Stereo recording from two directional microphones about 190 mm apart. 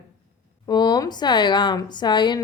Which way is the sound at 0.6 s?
20° left (ahead or behind).